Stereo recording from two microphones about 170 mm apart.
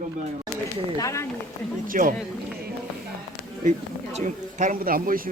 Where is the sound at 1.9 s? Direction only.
55° right (ahead or behind).